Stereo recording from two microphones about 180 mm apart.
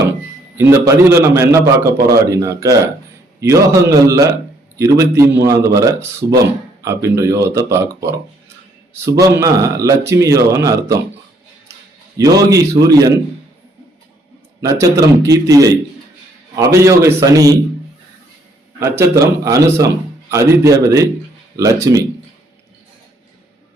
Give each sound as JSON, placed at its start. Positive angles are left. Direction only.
{"t": 0.5, "sound": "a man's voice", "side_deg": -15}
{"t": 12.1, "sound": "speech", "side_deg": -20}
{"t": 14.6, "sound": "speech", "side_deg": -20}
{"t": 16.7, "sound": "a man's voice", "side_deg": -15}
{"t": 18.8, "sound": "a man's voice", "side_deg": -15}